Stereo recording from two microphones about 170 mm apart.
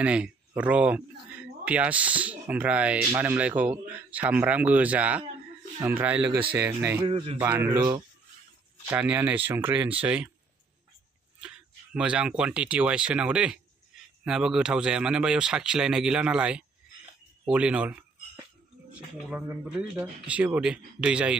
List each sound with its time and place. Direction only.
0.0 s speech: 5° right (ahead or behind)
7.1 s a man's voice: 30° right (ahead or behind)
7.3 s speech: 10° right (ahead or behind)
11.4 s speech: 5° right (ahead or behind)
17.5 s a sound: 5° right (ahead or behind)
19.1 s speech: 5° right (ahead or behind)